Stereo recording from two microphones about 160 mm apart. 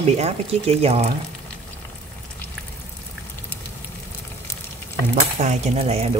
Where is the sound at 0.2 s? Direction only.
40° right (ahead or behind).